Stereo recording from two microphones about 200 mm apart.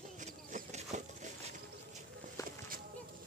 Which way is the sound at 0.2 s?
40° right (ahead or behind).